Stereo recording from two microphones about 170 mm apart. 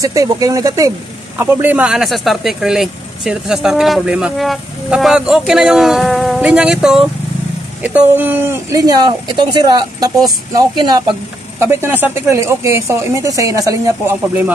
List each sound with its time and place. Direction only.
0.0 s speech: 20° right (ahead or behind)
11.6 s speech: 15° right (ahead or behind)